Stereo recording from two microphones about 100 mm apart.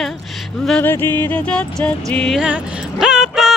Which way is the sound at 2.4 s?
10° right (ahead or behind).